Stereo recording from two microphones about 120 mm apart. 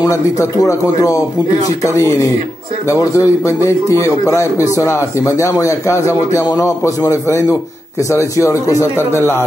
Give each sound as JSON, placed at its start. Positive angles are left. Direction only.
{"t": 0.0, "sound": "speech", "side_deg": 30}